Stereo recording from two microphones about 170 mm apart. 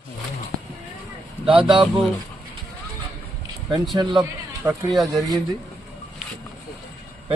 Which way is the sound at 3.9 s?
25° right (ahead or behind).